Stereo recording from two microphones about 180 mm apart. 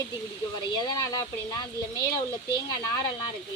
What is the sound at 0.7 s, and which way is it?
Speech, 20° left (ahead or behind).